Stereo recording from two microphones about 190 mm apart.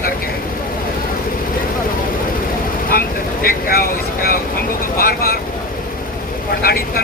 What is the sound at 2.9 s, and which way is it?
Vehicle, 50° left (ahead or behind).